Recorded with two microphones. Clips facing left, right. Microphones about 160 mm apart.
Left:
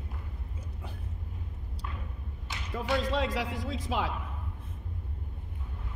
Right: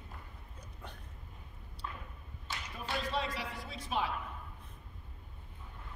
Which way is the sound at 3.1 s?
90° left.